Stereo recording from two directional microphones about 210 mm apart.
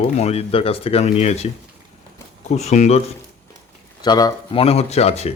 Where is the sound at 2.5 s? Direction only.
30° left (ahead or behind).